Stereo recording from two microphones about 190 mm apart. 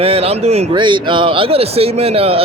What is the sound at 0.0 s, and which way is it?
Speech, 30° right (ahead or behind).